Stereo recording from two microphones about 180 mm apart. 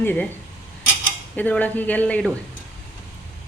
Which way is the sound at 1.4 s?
10° left (ahead or behind).